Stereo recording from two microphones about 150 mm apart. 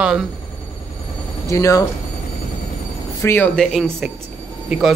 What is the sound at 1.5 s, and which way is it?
Speech, 20° left (ahead or behind).